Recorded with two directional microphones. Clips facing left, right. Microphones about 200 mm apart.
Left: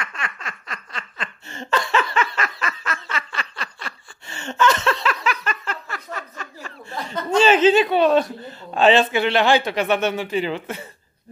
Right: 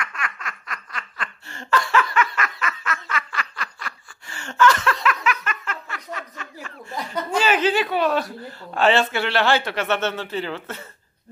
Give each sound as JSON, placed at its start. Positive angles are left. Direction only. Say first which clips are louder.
{"t": 0.0, "sound": "laughter", "louder": "even", "side_deg": 25}
{"t": 7.2, "sound": "a man's voice", "louder": "left 6 dB", "side_deg": 25}